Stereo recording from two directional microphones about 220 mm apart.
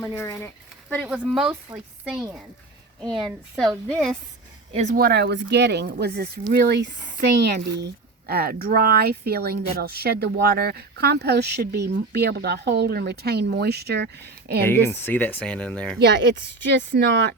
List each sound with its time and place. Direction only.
0.0 s speech: 10° left (ahead or behind)
1.0 s a woman's voice: 5° right (ahead or behind)
3.2 s a woman's voice: centre (ahead or behind)
4.7 s speech: 30° right (ahead or behind); by 14.6 s 50° right (ahead or behind)
14.6 s speech: 10° left (ahead or behind)
16.0 s speech: 50° right (ahead or behind)